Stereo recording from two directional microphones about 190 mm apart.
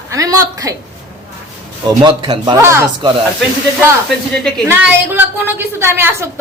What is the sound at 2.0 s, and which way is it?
Speech, 25° right (ahead or behind).